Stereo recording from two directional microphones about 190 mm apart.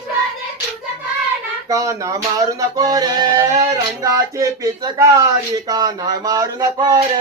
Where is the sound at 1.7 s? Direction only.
15° right (ahead or behind).